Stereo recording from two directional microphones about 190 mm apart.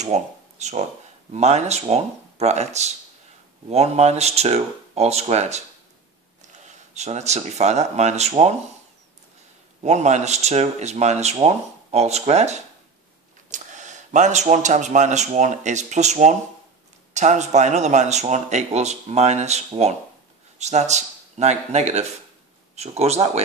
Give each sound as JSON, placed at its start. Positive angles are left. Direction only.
{"t": 0.0, "sound": "speech", "side_deg": -35}
{"t": 9.8, "sound": "speech", "side_deg": -35}